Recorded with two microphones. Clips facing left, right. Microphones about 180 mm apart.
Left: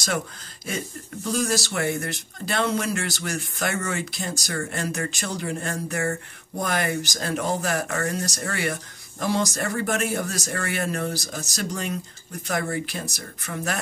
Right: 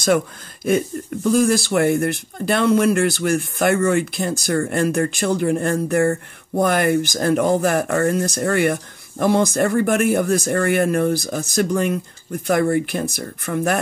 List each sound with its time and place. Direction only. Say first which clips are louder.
1.3 s speech: right 9 dB; 55° right (ahead or behind)
13.5 s speech: right 10 dB; 90° right